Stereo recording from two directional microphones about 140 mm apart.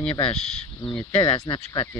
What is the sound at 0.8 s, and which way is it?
Speech, 35° left (ahead or behind).